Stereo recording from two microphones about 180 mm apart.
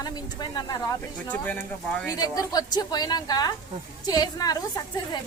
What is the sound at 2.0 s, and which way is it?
A woman's voice, 20° left (ahead or behind).